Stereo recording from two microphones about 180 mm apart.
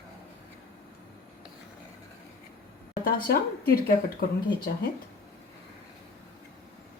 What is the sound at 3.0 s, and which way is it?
Speech, 55° left (ahead or behind).